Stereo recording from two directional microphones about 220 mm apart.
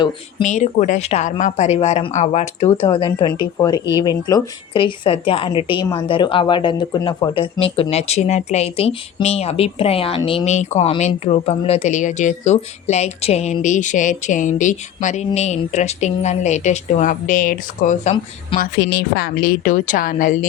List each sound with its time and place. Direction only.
0.4 s a woman's voice: 35° left (ahead or behind)
18.8 s speech: 45° left (ahead or behind)